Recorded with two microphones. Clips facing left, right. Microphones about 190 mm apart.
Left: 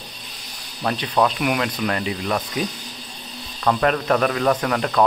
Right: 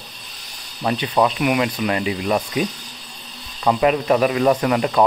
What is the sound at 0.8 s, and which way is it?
Speech, 5° right (ahead or behind).